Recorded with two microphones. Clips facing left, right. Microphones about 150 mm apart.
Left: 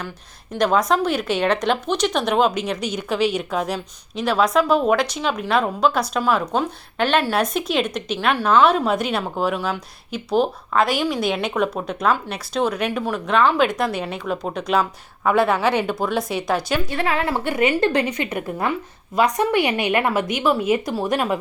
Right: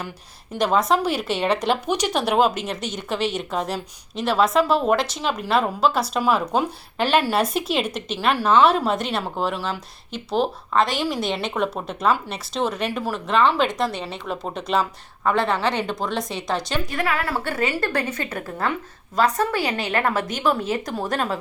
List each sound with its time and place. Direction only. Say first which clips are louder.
0.5 s speech: left 1 dB; 5° right (ahead or behind)
16.9 s a woman's voice: left 1 dB; 25° left (ahead or behind)
17.3 s a woman's voice: left 4 dB; 15° left (ahead or behind)